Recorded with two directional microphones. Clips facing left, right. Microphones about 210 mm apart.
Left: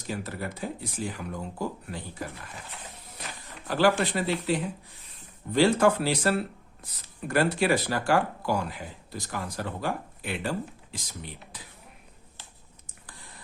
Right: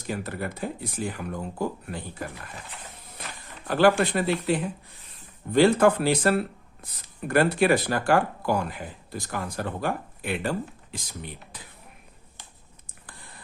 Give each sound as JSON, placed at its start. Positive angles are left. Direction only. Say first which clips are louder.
{"t": 0.1, "sound": "speech", "louder": "right 3 dB", "side_deg": -60}
{"t": 3.7, "sound": "speech", "louder": "right 3 dB", "side_deg": -55}